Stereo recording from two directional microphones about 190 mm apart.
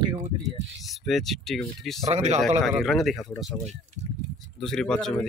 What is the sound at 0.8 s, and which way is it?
Speech, centre (ahead or behind).